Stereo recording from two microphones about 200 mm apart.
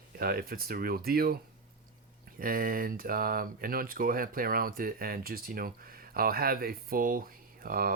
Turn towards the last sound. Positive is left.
turn(degrees=-45)  # may be behind; listen again after turning